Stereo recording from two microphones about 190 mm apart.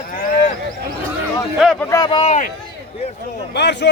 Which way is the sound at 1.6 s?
Centre (ahead or behind).